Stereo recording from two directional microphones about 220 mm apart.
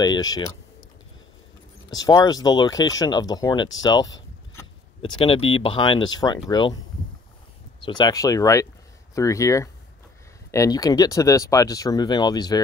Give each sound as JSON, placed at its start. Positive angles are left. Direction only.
{"t": 0.0, "sound": "speech", "side_deg": 20}
{"t": 1.9, "sound": "speech", "side_deg": 15}
{"t": 3.8, "sound": "a sound", "side_deg": 15}
{"t": 5.2, "sound": "speech", "side_deg": 25}
{"t": 7.8, "sound": "speech", "side_deg": 20}